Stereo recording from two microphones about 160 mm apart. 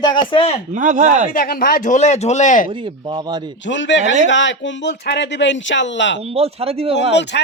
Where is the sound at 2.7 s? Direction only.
30° right (ahead or behind).